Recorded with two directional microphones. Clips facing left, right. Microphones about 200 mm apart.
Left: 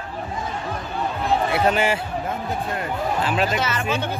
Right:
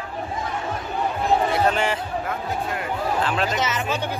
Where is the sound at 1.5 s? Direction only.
10° left (ahead or behind).